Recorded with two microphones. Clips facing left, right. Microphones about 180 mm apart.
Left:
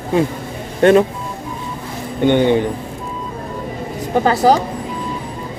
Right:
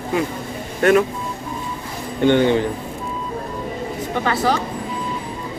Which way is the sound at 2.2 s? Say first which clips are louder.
Left 2 dB; 15° left (ahead or behind).